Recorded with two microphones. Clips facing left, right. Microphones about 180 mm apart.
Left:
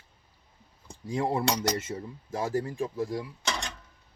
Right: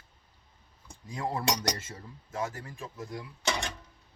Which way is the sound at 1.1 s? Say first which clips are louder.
Left 4 dB; 25° left (ahead or behind).